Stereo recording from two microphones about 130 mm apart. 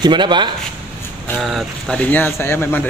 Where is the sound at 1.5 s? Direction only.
5° left (ahead or behind).